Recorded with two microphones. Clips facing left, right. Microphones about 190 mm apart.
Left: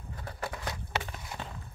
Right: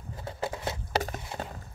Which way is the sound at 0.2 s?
25° right (ahead or behind).